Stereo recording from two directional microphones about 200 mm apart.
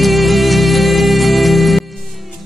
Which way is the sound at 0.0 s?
Centre (ahead or behind).